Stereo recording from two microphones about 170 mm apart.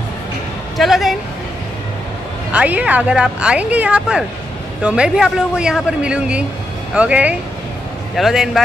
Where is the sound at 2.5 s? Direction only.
10° right (ahead or behind).